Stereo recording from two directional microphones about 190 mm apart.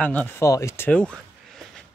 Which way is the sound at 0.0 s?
10° left (ahead or behind).